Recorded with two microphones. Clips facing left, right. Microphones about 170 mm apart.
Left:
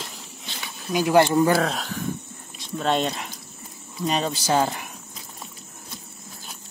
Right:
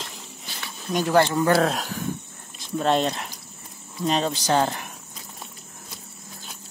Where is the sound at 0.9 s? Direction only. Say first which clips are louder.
Left 2 dB; 15° left (ahead or behind).